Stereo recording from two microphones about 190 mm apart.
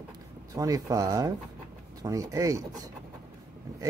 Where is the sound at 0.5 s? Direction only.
20° right (ahead or behind).